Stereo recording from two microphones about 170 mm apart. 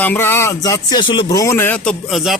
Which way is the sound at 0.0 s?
10° left (ahead or behind).